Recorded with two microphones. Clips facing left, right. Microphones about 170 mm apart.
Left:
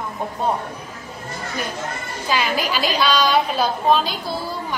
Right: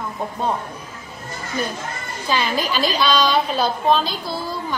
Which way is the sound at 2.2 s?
10° left (ahead or behind).